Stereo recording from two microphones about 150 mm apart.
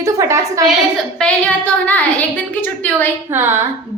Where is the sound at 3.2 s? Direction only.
15° right (ahead or behind).